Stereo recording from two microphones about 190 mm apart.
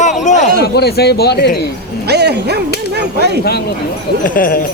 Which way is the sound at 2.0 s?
60° right (ahead or behind).